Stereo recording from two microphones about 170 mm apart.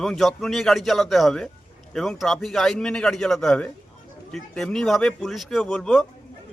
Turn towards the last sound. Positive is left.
turn(degrees=0)  # may be behind; listen again after turning